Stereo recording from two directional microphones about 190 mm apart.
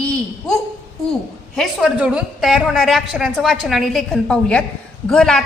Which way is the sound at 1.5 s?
Centre (ahead or behind).